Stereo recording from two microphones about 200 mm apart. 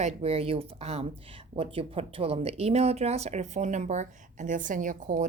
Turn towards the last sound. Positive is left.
turn(degrees=-40)  # may be behind; listen again after turning